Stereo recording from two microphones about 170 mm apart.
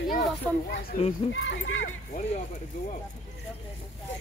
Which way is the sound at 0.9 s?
55° left (ahead or behind).